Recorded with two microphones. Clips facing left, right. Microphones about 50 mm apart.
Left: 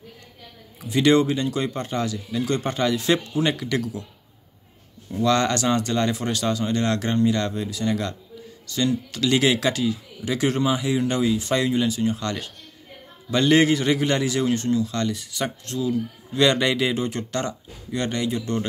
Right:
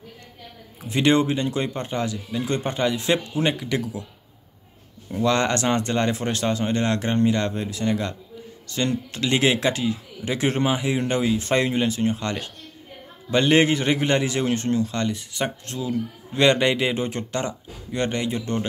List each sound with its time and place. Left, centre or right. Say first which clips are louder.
0.8 s speech: left 1 dB; right
5.1 s speech: even; right